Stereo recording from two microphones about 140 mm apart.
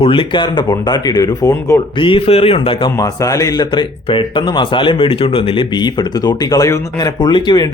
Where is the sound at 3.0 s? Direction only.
25° left (ahead or behind).